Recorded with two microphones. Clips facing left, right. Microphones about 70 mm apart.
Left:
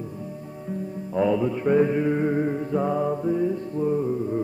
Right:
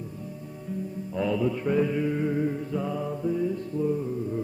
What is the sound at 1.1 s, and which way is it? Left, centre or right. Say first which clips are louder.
Music: left 4 dB; left.